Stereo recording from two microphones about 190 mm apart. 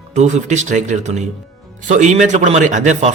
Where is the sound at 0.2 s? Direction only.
40° right (ahead or behind).